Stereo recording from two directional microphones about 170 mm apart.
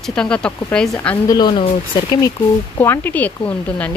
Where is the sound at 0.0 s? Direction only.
5° left (ahead or behind).